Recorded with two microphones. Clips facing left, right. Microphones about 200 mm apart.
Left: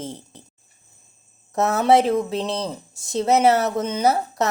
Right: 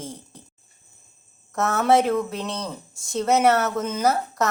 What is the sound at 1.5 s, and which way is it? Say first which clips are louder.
A woman's voice: left 3 dB; 30° left (ahead or behind).